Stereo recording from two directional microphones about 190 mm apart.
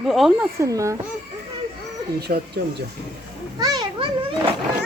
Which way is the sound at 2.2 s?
60° right (ahead or behind).